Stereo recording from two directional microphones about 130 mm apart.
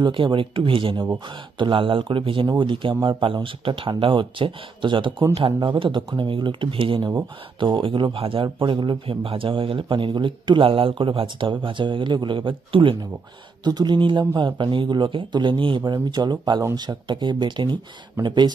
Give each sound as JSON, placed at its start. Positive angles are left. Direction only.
{"t": 0.0, "sound": "speech", "side_deg": -40}